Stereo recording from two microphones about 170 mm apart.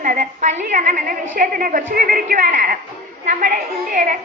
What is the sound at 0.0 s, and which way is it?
A woman's voice, 50° right (ahead or behind).